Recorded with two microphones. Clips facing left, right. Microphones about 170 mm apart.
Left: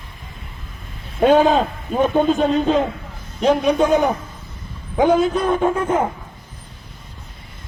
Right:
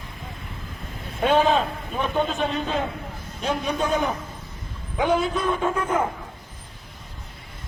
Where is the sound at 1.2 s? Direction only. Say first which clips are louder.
Left 6 dB; 45° left (ahead or behind).